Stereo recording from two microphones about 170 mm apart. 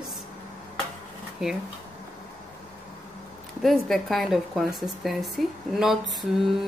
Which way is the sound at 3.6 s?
Centre (ahead or behind).